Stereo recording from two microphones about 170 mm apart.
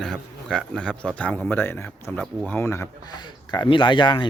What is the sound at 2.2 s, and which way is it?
Speech, centre (ahead or behind).